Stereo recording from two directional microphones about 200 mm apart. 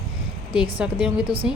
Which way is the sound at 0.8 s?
5° right (ahead or behind).